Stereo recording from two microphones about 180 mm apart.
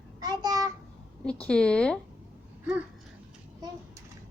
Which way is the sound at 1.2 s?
5° left (ahead or behind).